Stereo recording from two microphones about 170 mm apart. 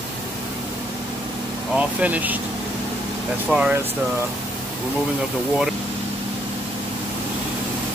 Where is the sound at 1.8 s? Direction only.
10° right (ahead or behind).